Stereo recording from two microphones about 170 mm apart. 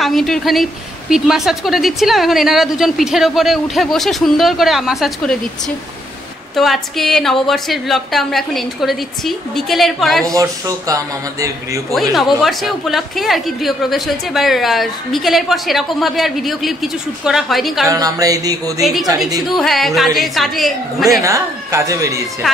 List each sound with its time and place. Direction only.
0.0 s a woman's voice: centre (ahead or behind)
6.5 s a woman's voice: centre (ahead or behind)
10.3 s a man's voice: 20° right (ahead or behind)
11.9 s a woman's voice: centre (ahead or behind)
17.8 s a man's voice: 20° right (ahead or behind)
18.8 s a woman's voice: centre (ahead or behind)
21.2 s speech: 20° right (ahead or behind)